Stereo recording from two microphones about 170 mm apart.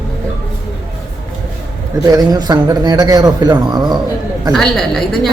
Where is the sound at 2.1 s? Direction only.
20° right (ahead or behind).